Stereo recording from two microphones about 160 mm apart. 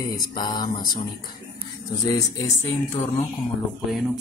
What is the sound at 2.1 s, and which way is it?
Speech, 20° left (ahead or behind).